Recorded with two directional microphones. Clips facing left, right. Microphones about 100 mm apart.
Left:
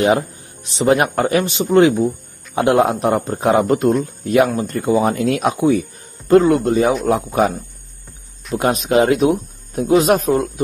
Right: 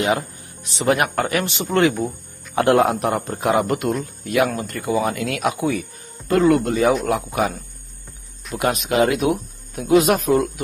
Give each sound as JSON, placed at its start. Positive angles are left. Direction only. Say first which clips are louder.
{"t": 0.7, "sound": "speech", "louder": "left 4 dB", "side_deg": 30}